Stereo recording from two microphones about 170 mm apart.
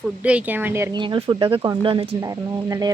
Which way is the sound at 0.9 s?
30° right (ahead or behind).